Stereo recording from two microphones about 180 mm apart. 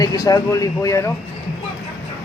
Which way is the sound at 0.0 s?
20° left (ahead or behind).